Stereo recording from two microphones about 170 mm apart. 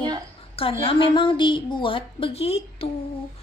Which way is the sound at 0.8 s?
30° left (ahead or behind).